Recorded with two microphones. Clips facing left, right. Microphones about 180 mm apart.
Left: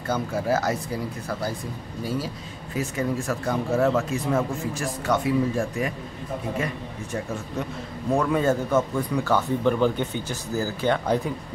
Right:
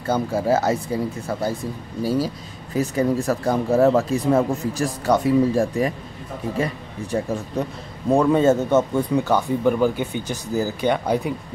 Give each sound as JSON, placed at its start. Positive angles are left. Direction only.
{"t": 0.1, "sound": "speech", "side_deg": -30}
{"t": 2.0, "sound": "speech", "side_deg": -35}
{"t": 9.7, "sound": "speech", "side_deg": -10}